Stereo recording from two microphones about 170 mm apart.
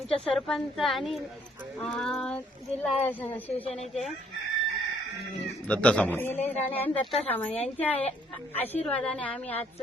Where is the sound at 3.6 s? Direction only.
40° left (ahead or behind).